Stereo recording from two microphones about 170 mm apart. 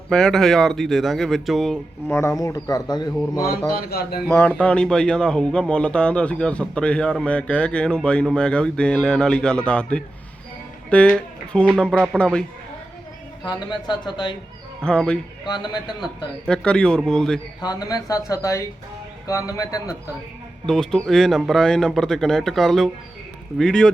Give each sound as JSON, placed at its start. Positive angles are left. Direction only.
{"t": 0.1, "sound": "a man's voice", "side_deg": 5}
{"t": 2.0, "sound": "speech", "side_deg": 15}
{"t": 3.8, "sound": "a man's voice", "side_deg": 60}
{"t": 4.3, "sound": "a man's voice", "side_deg": 10}
{"t": 13.4, "sound": "speech", "side_deg": 25}
{"t": 14.8, "sound": "a man's voice", "side_deg": 5}
{"t": 15.4, "sound": "speech", "side_deg": 25}
{"t": 16.5, "sound": "a man's voice", "side_deg": 5}
{"t": 17.6, "sound": "speech", "side_deg": 25}
{"t": 20.7, "sound": "a man's voice", "side_deg": 0}